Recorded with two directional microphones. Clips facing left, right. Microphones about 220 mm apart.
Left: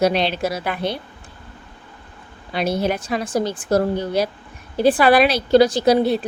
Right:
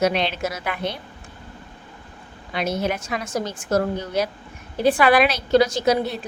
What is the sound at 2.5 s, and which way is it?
A woman's voice, 35° left (ahead or behind).